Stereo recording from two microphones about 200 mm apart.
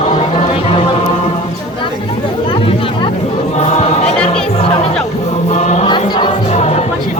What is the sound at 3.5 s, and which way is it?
Choir, 35° left (ahead or behind).